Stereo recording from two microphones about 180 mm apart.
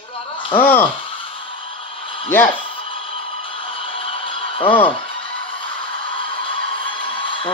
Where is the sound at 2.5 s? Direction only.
30° left (ahead or behind).